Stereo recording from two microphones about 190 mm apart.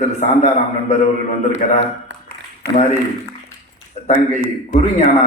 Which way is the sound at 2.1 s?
75° right (ahead or behind).